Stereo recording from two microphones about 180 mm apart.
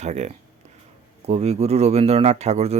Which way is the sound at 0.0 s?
40° right (ahead or behind).